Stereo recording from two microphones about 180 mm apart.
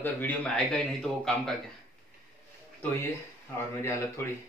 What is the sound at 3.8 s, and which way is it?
Speech, 15° left (ahead or behind).